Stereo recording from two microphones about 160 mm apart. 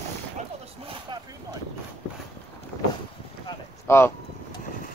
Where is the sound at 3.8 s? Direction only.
15° left (ahead or behind).